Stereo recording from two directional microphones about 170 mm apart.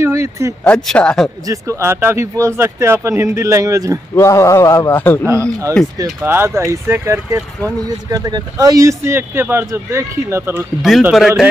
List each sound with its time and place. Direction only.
0.0 s a sound: 15° right (ahead or behind)
0.9 s speech: 5° left (ahead or behind)
1.4 s speech: 20° right (ahead or behind)
4.1 s a man's voice: 15° left (ahead or behind)
5.2 s speech: 15° right (ahead or behind)
10.8 s speech: 5° right (ahead or behind)